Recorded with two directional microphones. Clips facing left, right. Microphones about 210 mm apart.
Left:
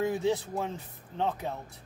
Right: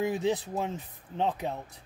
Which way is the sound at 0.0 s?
15° right (ahead or behind).